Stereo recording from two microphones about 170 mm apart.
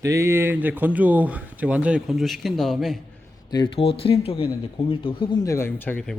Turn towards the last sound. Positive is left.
turn(degrees=10)  # may be behind; listen again after turning